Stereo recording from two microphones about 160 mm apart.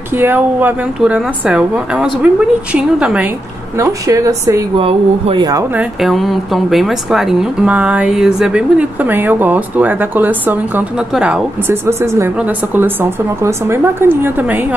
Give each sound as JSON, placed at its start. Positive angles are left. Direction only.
{"t": 0.2, "sound": "a woman's voice", "side_deg": -10}
{"t": 3.8, "sound": "a woman's voice", "side_deg": -20}
{"t": 4.7, "sound": "speech", "side_deg": -35}
{"t": 5.8, "sound": "a woman's voice", "side_deg": 0}